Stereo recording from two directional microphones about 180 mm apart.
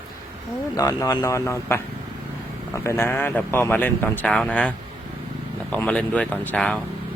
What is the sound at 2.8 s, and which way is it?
Speech, 15° left (ahead or behind).